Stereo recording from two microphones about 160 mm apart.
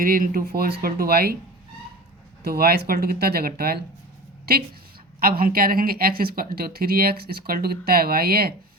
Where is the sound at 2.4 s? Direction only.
75° right (ahead or behind).